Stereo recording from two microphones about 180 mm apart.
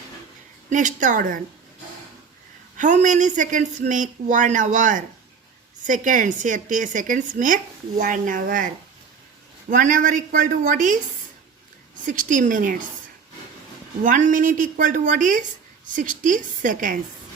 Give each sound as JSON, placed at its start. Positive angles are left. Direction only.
{"t": 0.7, "sound": "a woman's voice", "side_deg": -45}
{"t": 2.7, "sound": "a woman's voice", "side_deg": -45}
{"t": 12.0, "sound": "a woman's voice", "side_deg": -45}
{"t": 14.0, "sound": "a woman's voice", "side_deg": -45}